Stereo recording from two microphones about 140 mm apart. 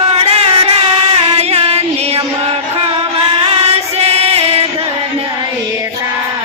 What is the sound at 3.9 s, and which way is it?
Music, 45° right (ahead or behind).